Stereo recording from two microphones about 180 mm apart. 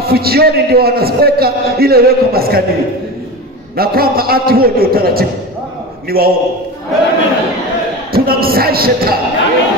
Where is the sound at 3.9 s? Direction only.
55° right (ahead or behind).